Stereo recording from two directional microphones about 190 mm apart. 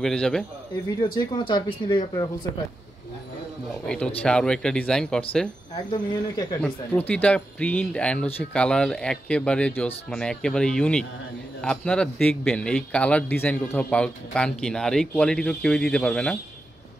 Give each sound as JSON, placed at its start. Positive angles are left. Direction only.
{"t": 0.0, "sound": "a man's voice", "side_deg": 5}
{"t": 0.8, "sound": "speech", "side_deg": 25}
{"t": 3.8, "sound": "a man's voice", "side_deg": 5}
{"t": 5.9, "sound": "speech", "side_deg": 20}
{"t": 6.6, "sound": "a man's voice", "side_deg": 10}